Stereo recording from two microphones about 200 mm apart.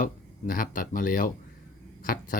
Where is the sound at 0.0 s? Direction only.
45° left (ahead or behind).